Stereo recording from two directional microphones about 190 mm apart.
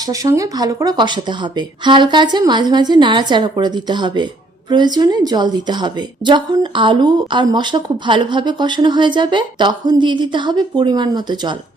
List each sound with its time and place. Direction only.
0.1 s a woman's voice: 15° right (ahead or behind)